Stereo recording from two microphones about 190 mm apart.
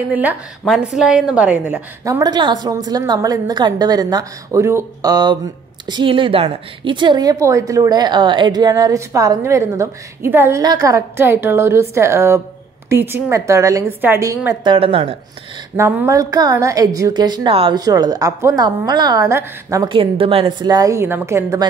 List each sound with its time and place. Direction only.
0.1 s a woman's voice: 10° right (ahead or behind); by 15.1 s 30° right (ahead or behind)
15.7 s a woman's voice: 10° right (ahead or behind)